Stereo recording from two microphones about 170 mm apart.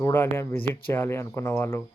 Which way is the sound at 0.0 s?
15° left (ahead or behind).